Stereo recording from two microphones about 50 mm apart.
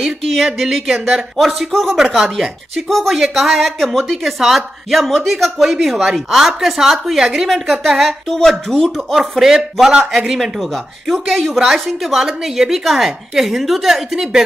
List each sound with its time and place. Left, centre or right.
0.5 s a woman's voice: centre
10.4 s a woman's voice: centre